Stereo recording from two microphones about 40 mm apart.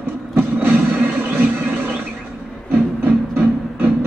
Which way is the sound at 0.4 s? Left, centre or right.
Right.